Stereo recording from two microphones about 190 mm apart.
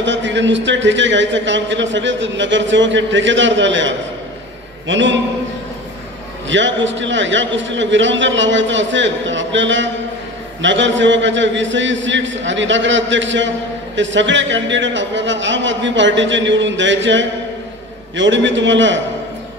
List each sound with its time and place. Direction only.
0.0 s a man's voice: 70° right (ahead or behind)
6.5 s a man's voice: 75° right (ahead or behind)